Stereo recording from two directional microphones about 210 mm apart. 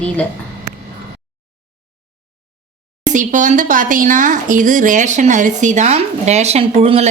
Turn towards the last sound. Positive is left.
turn(degrees=-25)  # may be behind; listen again after turning